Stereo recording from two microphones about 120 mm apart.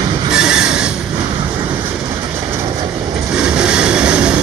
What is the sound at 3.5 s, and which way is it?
Vehicle, 5° right (ahead or behind).